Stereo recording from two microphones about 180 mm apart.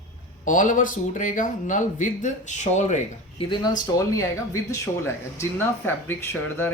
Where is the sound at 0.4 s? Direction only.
45° left (ahead or behind).